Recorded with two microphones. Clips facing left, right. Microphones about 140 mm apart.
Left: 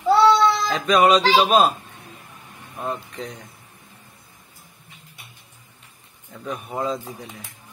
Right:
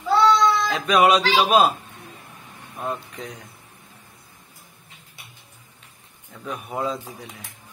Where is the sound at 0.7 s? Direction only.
5° right (ahead or behind).